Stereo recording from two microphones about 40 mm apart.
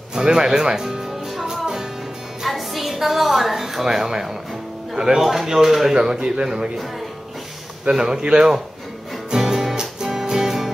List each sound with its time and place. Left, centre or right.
0.1 s music: centre
2.4 s music: centre
3.5 s speech: centre
5.2 s speech: centre
5.9 s speech: right
7.9 s speech: centre
9.3 s music: centre